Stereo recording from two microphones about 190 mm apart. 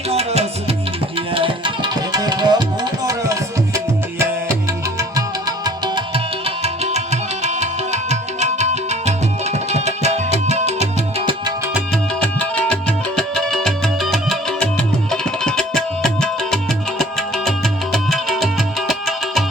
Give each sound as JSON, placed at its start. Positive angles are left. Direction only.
{"t": 0.1, "sound": "music", "side_deg": -35}
{"t": 1.3, "sound": "tabla", "side_deg": -30}
{"t": 4.9, "sound": "music", "side_deg": -20}
{"t": 12.2, "sound": "music", "side_deg": 5}